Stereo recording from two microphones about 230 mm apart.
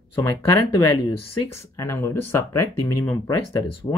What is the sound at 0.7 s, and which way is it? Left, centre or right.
Speech, centre.